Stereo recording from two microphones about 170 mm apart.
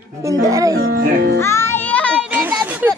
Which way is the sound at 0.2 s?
20° right (ahead or behind).